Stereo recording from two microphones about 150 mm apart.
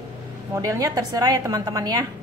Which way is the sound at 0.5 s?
25° right (ahead or behind).